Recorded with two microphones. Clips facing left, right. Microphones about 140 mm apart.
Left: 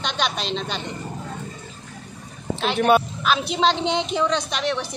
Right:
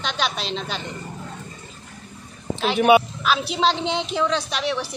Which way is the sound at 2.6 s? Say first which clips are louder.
Right 2 dB; 5° right (ahead or behind).